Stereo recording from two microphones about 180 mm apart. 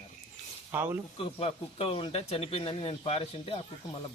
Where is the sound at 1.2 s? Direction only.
30° left (ahead or behind).